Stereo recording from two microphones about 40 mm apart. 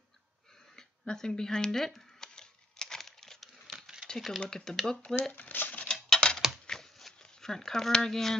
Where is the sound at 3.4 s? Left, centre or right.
Centre.